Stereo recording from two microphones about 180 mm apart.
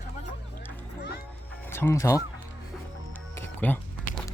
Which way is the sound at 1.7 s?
15° left (ahead or behind).